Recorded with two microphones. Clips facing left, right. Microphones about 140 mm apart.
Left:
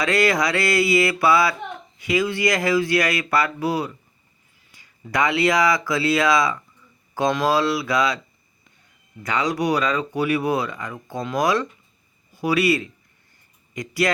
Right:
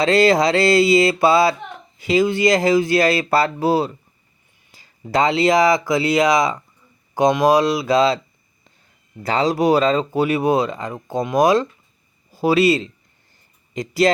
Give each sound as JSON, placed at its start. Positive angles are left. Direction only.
{"t": 0.0, "sound": "speech", "side_deg": -25}
{"t": 9.2, "sound": "speech", "side_deg": -30}